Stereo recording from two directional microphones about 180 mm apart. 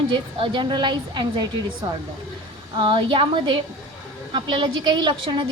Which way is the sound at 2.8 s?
25° right (ahead or behind).